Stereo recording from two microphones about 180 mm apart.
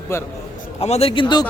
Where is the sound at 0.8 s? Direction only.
35° left (ahead or behind).